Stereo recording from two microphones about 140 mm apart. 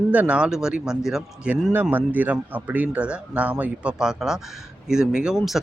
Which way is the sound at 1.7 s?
15° right (ahead or behind).